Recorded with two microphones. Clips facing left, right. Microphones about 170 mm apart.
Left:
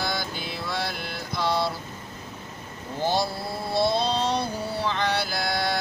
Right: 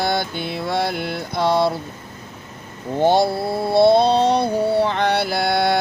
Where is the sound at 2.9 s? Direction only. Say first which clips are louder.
Right 9 dB; 60° right (ahead or behind).